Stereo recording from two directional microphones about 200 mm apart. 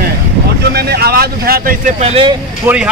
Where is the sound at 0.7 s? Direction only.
50° right (ahead or behind).